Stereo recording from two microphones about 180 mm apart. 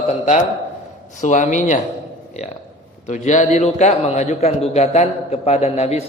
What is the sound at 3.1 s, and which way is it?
A man's voice, 40° left (ahead or behind).